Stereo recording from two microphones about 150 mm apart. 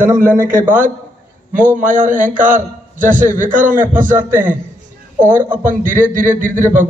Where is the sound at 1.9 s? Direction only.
60° right (ahead or behind).